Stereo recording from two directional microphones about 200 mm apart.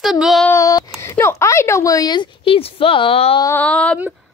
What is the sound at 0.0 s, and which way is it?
Speech, centre (ahead or behind).